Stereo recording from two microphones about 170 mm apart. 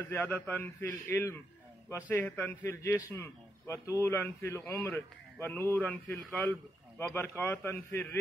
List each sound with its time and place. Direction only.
0.0 s a man's voice: 10° left (ahead or behind)